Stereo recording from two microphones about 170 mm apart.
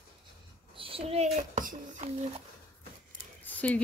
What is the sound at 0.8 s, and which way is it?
A child's voice, 35° right (ahead or behind).